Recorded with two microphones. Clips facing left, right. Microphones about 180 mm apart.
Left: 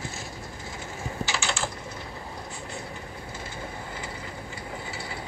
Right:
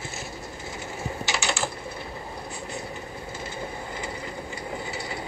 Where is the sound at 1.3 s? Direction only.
15° right (ahead or behind).